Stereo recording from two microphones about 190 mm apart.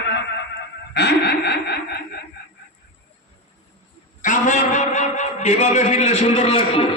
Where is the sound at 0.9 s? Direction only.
60° left (ahead or behind).